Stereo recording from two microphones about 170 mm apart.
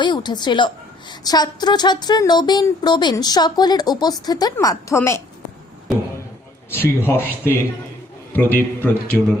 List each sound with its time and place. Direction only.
0.0 s a woman's voice: 25° left (ahead or behind)
6.7 s a man's voice: 15° left (ahead or behind)